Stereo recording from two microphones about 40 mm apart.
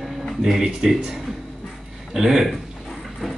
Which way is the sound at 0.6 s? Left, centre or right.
Centre.